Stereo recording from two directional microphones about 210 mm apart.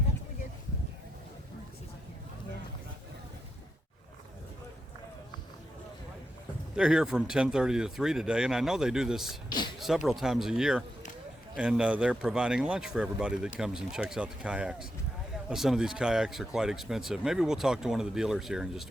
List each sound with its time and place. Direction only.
6.7 s speech: 5° right (ahead or behind)
9.5 s speech: 20° left (ahead or behind)
9.7 s speech: centre (ahead or behind)